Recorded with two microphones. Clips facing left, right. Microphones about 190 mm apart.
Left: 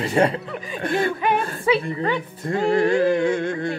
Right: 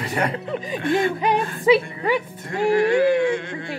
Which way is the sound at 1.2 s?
20° right (ahead or behind).